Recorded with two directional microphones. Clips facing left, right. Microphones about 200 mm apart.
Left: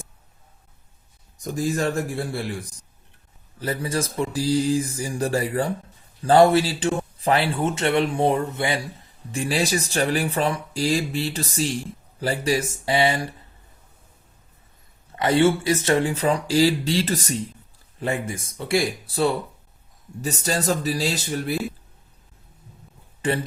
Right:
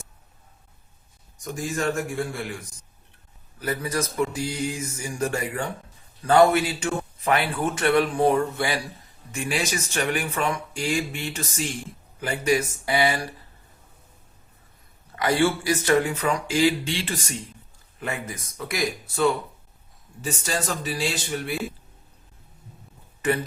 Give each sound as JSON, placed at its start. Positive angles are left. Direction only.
{"t": 1.5, "sound": "speech", "side_deg": 35}
{"t": 9.3, "sound": "speech", "side_deg": 35}
{"t": 15.1, "sound": "speech", "side_deg": 25}
{"t": 23.2, "sound": "speech", "side_deg": 30}